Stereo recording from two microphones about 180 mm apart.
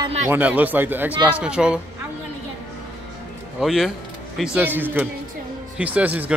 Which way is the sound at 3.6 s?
Centre (ahead or behind).